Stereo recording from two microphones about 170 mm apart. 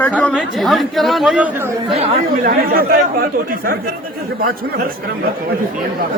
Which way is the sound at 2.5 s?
60° right (ahead or behind).